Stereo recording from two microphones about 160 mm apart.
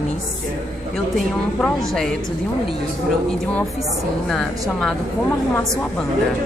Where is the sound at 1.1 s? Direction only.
5° left (ahead or behind).